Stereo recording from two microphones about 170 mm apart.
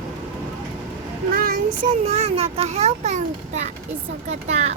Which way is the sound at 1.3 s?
60° right (ahead or behind).